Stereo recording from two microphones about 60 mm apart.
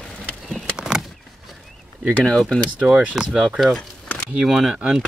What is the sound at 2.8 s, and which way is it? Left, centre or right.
Speech, right.